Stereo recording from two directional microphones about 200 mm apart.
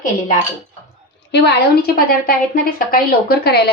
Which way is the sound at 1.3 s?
60° left (ahead or behind).